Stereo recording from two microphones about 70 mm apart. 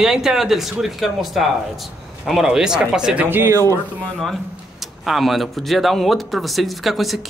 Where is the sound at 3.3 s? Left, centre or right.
Right.